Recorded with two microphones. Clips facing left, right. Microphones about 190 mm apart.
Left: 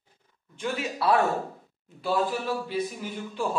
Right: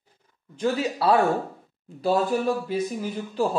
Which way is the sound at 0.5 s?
35° right (ahead or behind).